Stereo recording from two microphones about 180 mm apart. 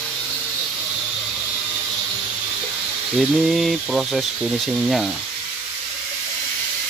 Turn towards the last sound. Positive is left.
turn(degrees=0)  # may be behind; listen again after turning